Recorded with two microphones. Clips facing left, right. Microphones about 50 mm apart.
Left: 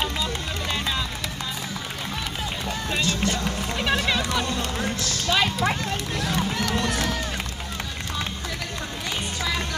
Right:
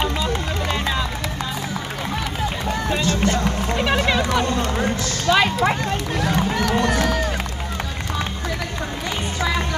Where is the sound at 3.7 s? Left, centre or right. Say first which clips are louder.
Right 3 dB; right.